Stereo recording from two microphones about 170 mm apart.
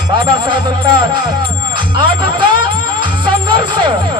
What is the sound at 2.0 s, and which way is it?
Speech, 30° right (ahead or behind).